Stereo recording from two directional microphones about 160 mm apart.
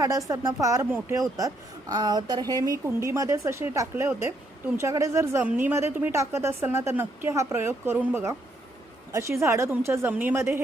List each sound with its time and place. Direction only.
0.0 s a woman's voice: 20° right (ahead or behind)